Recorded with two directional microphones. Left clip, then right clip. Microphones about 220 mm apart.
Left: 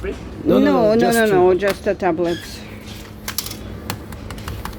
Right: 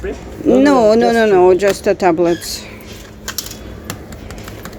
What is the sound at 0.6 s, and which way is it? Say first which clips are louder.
Speech: right 5 dB; 20° right (ahead or behind).